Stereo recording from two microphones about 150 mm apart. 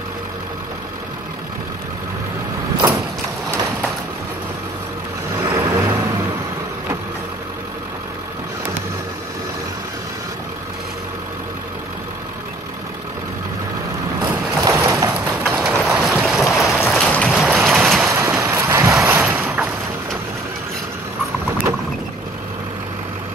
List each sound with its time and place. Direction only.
5.4 s vehicle: 25° right (ahead or behind)
14.2 s a sound: 20° right (ahead or behind)
15.2 s clip-clop: centre (ahead or behind)
15.9 s boat: 15° right (ahead or behind)
16.2 s boat: centre (ahead or behind)
18.1 s wind noise: 20° right (ahead or behind)
19.0 s boat: 15° right (ahead or behind)